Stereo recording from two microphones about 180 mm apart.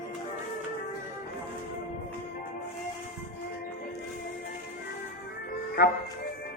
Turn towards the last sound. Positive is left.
turn(degrees=60)  # may be behind; listen again after turning